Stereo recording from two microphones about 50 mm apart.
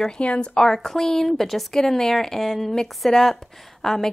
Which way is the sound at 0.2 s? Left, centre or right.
Left.